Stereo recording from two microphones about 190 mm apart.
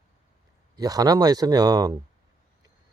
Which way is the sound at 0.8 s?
20° right (ahead or behind).